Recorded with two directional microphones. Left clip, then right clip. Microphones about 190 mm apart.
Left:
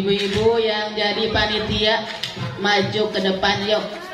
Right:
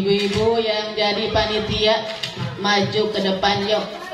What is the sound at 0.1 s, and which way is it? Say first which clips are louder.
Speech: left 1 dB; 25° left (ahead or behind).